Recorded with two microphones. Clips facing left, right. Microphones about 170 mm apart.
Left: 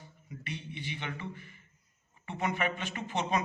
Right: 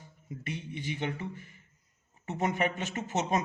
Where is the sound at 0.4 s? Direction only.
45° right (ahead or behind).